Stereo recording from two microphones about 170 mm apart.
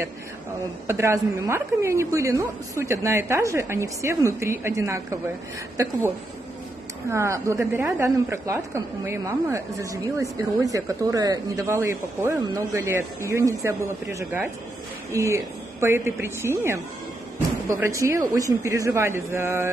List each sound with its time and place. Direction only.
0.8 s a woman's voice: 15° right (ahead or behind)
7.1 s a woman's voice: 15° right (ahead or behind)